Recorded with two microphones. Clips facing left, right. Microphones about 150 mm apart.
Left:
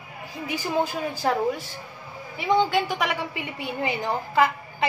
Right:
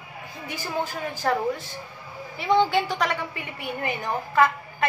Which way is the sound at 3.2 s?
15° left (ahead or behind).